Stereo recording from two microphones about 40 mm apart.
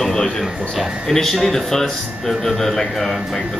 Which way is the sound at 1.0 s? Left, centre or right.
Centre.